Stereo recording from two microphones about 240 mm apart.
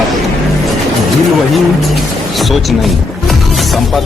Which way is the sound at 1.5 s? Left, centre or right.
Centre.